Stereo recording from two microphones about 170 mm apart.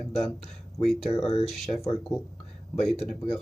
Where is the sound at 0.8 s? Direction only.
Centre (ahead or behind).